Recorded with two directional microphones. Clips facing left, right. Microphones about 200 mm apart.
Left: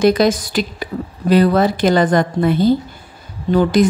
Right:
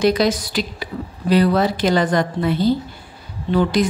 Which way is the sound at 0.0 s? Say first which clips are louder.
Left 3 dB; 50° left (ahead or behind).